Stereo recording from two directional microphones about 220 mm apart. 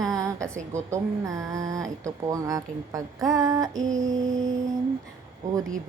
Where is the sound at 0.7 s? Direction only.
15° right (ahead or behind).